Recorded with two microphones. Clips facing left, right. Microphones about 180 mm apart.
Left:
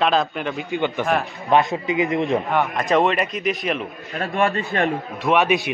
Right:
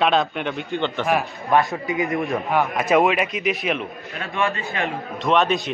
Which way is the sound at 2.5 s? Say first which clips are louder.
Right 5 dB; 5° right (ahead or behind).